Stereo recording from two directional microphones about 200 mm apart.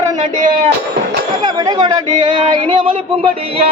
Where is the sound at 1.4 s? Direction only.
20° right (ahead or behind).